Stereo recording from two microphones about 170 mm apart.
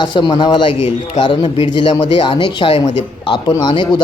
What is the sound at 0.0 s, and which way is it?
A man's voice, 25° left (ahead or behind).